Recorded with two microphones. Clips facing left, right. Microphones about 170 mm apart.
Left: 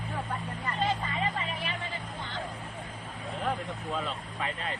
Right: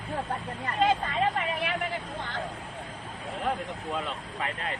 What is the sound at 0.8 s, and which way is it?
Vehicle, 65° right (ahead or behind).